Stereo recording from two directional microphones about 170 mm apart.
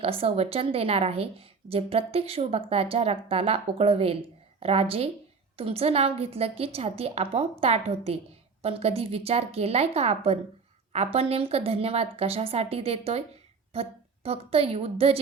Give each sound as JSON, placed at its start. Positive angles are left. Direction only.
{"t": 0.0, "sound": "a woman's voice", "side_deg": -35}